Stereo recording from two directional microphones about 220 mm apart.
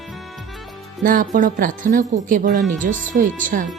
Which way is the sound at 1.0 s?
40° right (ahead or behind).